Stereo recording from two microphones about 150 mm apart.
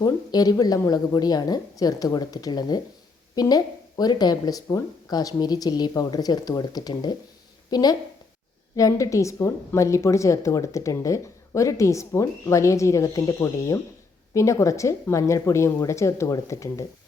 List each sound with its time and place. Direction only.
0.0 s a woman's voice: 25° left (ahead or behind)